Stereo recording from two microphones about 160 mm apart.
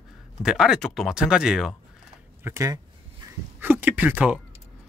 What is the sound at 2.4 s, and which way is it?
Speech, 15° right (ahead or behind).